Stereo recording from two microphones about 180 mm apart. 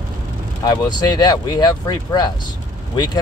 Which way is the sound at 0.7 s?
25° left (ahead or behind).